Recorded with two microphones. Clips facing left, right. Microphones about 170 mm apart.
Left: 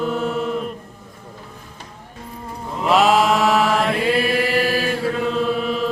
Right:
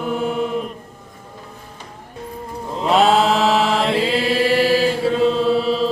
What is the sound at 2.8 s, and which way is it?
Chant, 30° right (ahead or behind).